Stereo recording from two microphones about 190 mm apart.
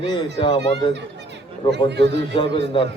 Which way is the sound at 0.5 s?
65° right (ahead or behind).